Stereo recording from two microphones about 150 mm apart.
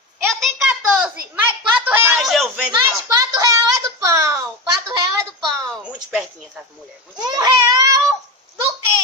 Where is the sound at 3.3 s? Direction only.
20° right (ahead or behind).